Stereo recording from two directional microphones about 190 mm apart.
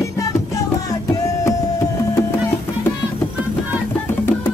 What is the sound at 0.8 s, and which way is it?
Music, 20° left (ahead or behind).